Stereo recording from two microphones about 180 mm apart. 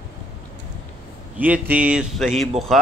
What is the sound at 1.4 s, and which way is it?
Speech, 10° right (ahead or behind).